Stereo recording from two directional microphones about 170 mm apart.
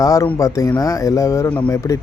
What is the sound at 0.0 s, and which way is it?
Speech, 20° left (ahead or behind).